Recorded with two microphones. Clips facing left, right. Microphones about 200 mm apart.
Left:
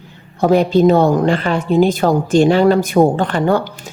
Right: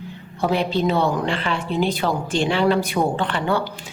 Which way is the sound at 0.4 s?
45° left (ahead or behind).